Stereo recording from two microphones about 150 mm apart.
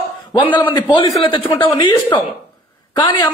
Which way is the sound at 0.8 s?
25° left (ahead or behind).